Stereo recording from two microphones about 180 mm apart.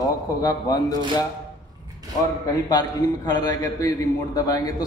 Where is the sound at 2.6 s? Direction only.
20° left (ahead or behind).